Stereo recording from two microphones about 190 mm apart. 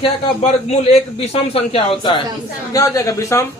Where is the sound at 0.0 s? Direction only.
35° left (ahead or behind).